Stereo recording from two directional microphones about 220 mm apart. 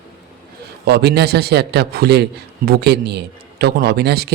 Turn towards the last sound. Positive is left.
turn(degrees=-45)  # may be behind; listen again after turning